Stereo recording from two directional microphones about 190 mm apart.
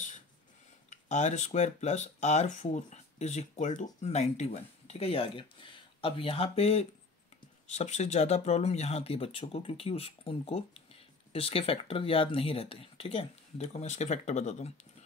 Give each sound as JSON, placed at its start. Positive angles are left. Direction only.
{"t": 1.0, "sound": "speech", "side_deg": 40}